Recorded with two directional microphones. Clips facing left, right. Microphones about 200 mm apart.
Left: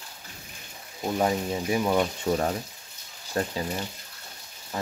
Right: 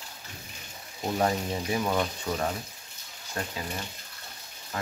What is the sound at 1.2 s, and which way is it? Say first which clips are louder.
Speech: left 3 dB; 10° left (ahead or behind).